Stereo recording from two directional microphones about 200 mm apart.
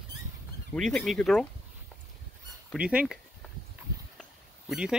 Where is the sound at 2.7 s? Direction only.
5° right (ahead or behind).